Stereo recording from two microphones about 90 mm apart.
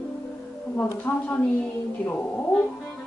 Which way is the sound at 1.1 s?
25° left (ahead or behind).